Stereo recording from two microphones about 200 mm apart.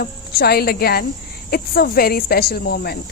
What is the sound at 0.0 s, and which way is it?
Speech, 50° left (ahead or behind).